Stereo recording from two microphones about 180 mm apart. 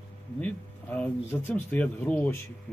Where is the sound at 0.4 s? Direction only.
10° left (ahead or behind).